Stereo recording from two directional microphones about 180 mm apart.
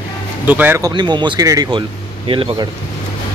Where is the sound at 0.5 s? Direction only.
10° right (ahead or behind); by 2.7 s 30° right (ahead or behind).